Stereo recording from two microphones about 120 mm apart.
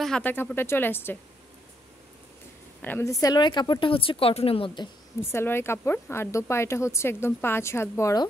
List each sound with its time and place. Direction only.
0.2 s speech: 15° left (ahead or behind)
2.8 s speech: 15° left (ahead or behind)
3.1 s speech: 30° left (ahead or behind)
3.9 s speech: 50° left (ahead or behind)
5.2 s speech: 20° left (ahead or behind)